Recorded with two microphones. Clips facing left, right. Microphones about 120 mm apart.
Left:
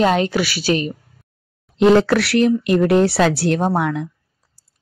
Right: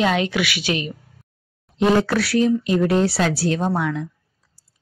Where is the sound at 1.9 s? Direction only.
70° left (ahead or behind).